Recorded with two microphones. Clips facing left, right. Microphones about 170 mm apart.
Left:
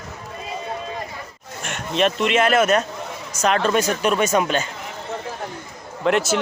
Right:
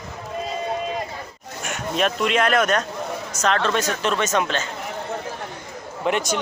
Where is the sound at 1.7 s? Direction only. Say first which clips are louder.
Left 2 dB; centre (ahead or behind).